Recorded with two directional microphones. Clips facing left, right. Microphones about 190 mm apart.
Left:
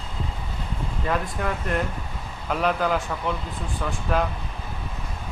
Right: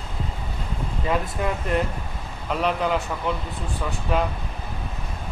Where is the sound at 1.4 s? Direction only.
5° right (ahead or behind).